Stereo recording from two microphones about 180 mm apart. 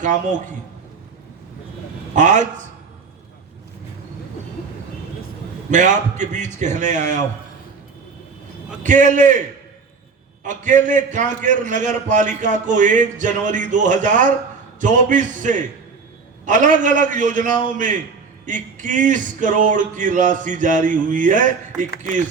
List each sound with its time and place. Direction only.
0.0 s a man's voice: 45° right (ahead or behind)
2.1 s a man's voice: 45° right (ahead or behind)
5.7 s a man's voice: 45° right (ahead or behind)
8.8 s a man's voice: 45° right (ahead or behind)
10.4 s a man's voice: 45° right (ahead or behind)